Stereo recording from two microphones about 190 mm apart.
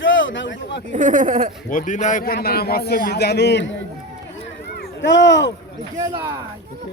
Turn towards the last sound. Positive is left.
turn(degrees=-20)  # may be behind; listen again after turning